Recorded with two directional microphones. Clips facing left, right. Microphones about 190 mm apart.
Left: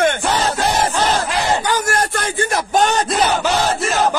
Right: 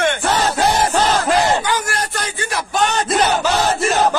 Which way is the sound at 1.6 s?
45° left (ahead or behind).